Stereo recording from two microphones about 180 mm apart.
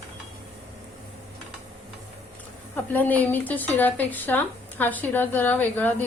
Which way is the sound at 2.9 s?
10° left (ahead or behind).